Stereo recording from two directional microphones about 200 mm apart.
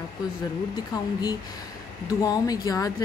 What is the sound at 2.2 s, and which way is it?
Speech, 20° left (ahead or behind).